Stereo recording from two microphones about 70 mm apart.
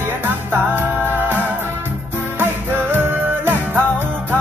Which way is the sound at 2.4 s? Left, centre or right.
Right.